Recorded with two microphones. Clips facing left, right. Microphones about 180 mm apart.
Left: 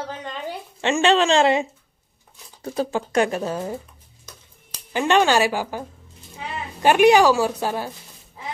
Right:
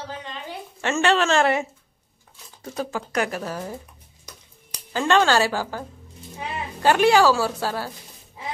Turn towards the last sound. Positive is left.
turn(degrees=20)  # may be behind; listen again after turning